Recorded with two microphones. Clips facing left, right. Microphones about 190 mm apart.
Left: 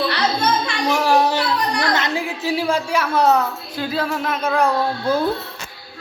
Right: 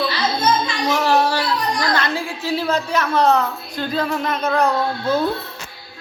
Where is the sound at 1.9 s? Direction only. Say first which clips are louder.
Even; 20° left (ahead or behind).